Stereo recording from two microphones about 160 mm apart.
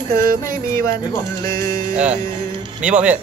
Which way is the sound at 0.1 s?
60° right (ahead or behind).